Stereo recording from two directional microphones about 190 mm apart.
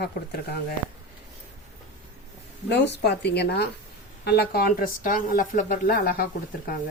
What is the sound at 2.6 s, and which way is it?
Speech, 65° left (ahead or behind).